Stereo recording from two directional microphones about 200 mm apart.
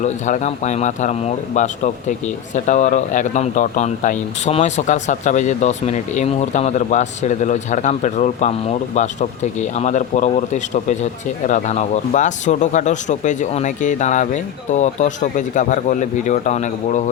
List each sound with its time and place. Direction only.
0.0 s speech: 35° left (ahead or behind)